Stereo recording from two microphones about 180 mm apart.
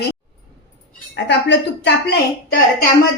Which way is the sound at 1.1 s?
75° left (ahead or behind).